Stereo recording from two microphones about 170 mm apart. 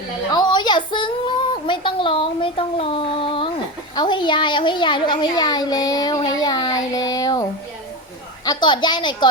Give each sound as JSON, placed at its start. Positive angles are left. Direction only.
{"t": 0.3, "sound": "female singing", "side_deg": 25}
{"t": 3.9, "sound": "a woman's voice", "side_deg": 25}
{"t": 8.4, "sound": "a woman's voice", "side_deg": 25}